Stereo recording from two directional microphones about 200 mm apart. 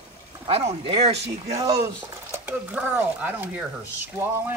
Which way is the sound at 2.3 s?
10° right (ahead or behind).